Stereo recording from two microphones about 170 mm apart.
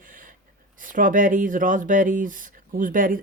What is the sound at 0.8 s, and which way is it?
Speech, 50° right (ahead or behind).